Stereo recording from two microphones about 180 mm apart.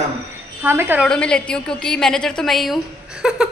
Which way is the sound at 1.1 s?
5° left (ahead or behind).